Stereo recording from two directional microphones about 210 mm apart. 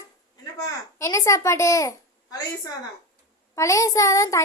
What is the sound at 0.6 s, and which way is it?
A child's voice, 15° left (ahead or behind).